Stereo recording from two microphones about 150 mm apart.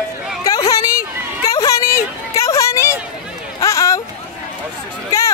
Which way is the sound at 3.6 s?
20° left (ahead or behind).